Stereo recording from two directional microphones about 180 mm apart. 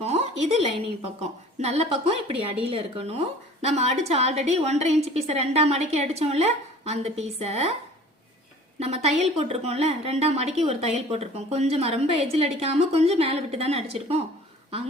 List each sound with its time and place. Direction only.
0.0 s a sound: 35° right (ahead or behind)
1.2 s a woman's voice: 40° right (ahead or behind)
8.8 s a woman's voice: 35° right (ahead or behind)